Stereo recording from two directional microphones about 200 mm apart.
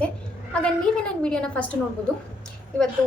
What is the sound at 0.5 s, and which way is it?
A woman's voice, 5° left (ahead or behind).